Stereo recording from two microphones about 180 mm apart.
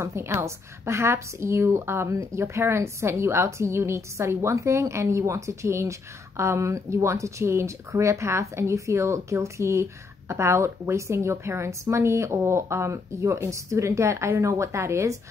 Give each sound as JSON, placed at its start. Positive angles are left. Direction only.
{"t": 0.0, "sound": "speech", "side_deg": -15}